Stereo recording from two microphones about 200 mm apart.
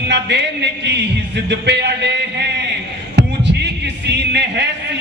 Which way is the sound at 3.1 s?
60° right (ahead or behind).